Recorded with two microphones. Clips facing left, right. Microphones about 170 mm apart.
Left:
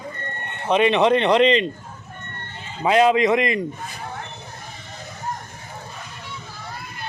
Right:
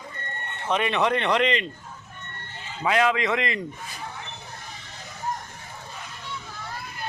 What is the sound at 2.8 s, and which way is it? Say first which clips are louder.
Speech: left 6 dB; 25° left (ahead or behind).